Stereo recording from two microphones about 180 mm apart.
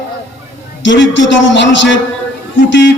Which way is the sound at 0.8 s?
90° left.